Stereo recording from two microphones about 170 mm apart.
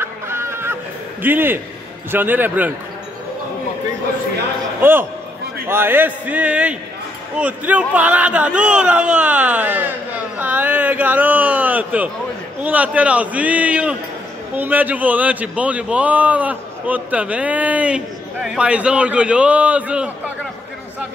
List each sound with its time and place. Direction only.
0.0 s a sound: 15° right (ahead or behind)
1.2 s speech: 10° right (ahead or behind)
5.7 s speech: 15° right (ahead or behind)